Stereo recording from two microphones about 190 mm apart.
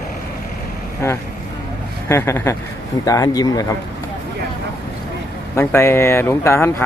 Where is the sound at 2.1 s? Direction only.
15° left (ahead or behind).